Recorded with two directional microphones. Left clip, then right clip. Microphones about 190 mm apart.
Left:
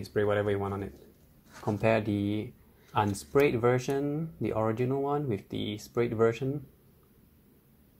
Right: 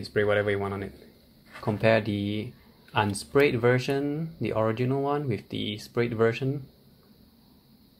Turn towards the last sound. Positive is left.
turn(degrees=15)  # may be behind; listen again after turning